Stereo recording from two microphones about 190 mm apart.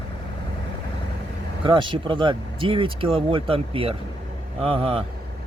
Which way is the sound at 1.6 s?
25° right (ahead or behind).